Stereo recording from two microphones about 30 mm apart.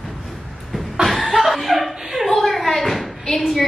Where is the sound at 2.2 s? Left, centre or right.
Centre.